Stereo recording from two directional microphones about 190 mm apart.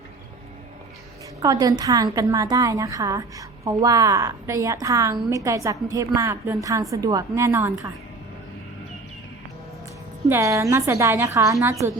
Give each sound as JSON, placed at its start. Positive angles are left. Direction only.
{"t": 1.4, "sound": "a woman's voice", "side_deg": -20}
{"t": 10.2, "sound": "a woman's voice", "side_deg": -15}